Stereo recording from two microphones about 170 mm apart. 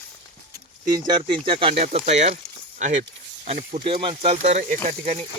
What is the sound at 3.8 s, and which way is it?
Speech, 30° right (ahead or behind).